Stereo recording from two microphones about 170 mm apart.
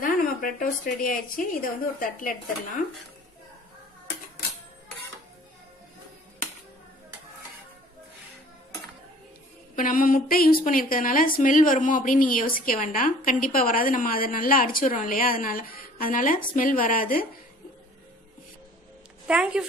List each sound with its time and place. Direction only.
0.0 s a woman's voice: 55° left (ahead or behind)
9.8 s a woman's voice: 55° left (ahead or behind)
19.2 s a woman's voice: 5° right (ahead or behind)